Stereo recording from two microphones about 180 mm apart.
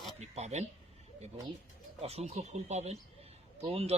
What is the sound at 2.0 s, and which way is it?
Speech, 35° right (ahead or behind).